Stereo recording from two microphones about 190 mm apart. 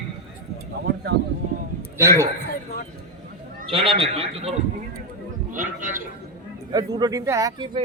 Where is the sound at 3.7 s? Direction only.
30° right (ahead or behind).